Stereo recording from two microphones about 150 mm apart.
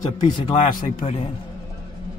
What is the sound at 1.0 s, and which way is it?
Speech, 45° left (ahead or behind).